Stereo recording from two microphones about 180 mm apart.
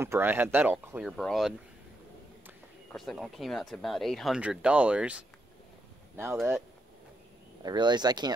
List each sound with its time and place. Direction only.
0.0 s speech: 10° right (ahead or behind)
2.9 s speech: centre (ahead or behind)
7.6 s speech: 25° right (ahead or behind)